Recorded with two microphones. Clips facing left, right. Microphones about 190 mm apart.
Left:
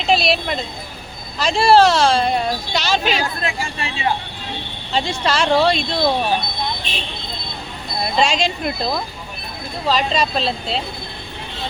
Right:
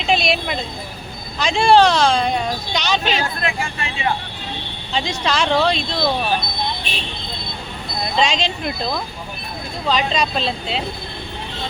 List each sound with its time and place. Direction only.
0.0 s a sound: centre (ahead or behind)
1.4 s speech: 5° left (ahead or behind)
3.4 s speech: 30° left (ahead or behind)
5.0 s speech: 5° left (ahead or behind)
8.1 s speech: 5° left (ahead or behind)